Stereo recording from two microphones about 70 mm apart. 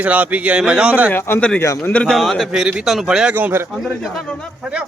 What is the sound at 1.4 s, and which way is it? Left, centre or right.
Speech, centre.